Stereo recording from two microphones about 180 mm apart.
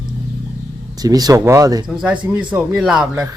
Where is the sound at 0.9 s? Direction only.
20° right (ahead or behind).